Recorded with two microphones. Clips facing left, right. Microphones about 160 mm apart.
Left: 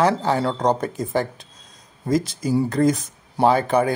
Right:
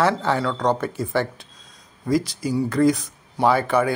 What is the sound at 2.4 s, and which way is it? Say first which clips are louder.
Speech: even; 40° left (ahead or behind).